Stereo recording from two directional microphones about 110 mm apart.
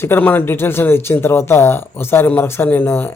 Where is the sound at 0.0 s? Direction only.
20° left (ahead or behind).